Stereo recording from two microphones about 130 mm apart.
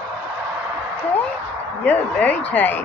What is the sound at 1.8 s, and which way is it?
Speech, 10° left (ahead or behind).